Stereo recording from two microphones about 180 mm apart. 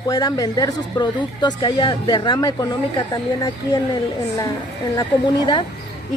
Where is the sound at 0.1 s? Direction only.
20° left (ahead or behind).